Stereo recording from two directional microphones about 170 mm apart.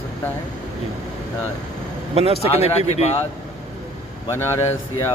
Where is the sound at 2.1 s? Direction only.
35° right (ahead or behind).